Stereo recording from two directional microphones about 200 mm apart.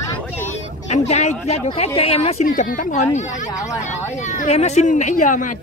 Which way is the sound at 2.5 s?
40° left (ahead or behind).